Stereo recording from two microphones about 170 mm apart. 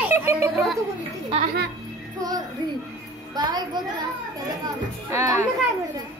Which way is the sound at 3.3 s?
25° right (ahead or behind).